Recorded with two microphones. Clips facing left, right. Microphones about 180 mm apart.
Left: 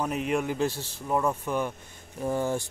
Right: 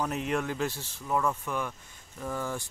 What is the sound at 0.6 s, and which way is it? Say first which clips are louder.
Speech: left 4 dB; 30° left (ahead or behind).